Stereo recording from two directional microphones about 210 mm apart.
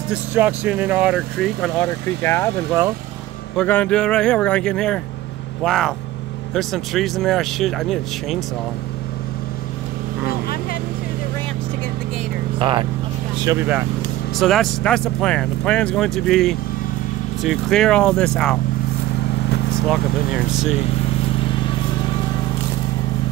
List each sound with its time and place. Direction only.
0.1 s speech: 10° right (ahead or behind); by 2.5 s 10° left (ahead or behind)
3.5 s speech: 5° left (ahead or behind)
10.2 s vehicle: 45° left (ahead or behind)
12.5 s speech: 25° right (ahead or behind)
14.4 s speech: centre (ahead or behind)